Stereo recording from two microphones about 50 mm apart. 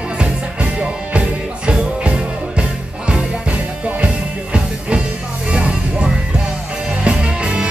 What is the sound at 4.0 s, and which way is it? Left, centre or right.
Music, right.